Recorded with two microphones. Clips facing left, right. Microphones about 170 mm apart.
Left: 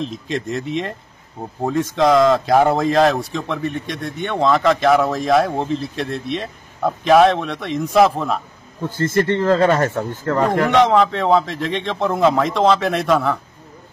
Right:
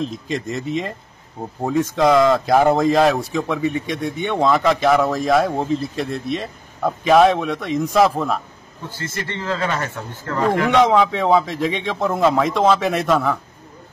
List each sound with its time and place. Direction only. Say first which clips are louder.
0.0 s a man's voice: even; centre (ahead or behind)
8.9 s speech: left 12 dB; 50° left (ahead or behind)
10.8 s a man's voice: left 1 dB; centre (ahead or behind)